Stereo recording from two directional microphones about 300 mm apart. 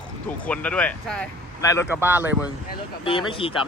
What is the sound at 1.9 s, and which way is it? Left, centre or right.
Speech, centre.